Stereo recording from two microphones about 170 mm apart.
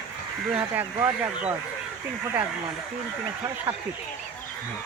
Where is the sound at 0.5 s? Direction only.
10° right (ahead or behind).